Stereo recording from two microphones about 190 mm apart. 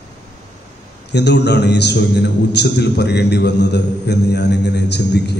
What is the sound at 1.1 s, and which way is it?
A man's voice, 65° left (ahead or behind).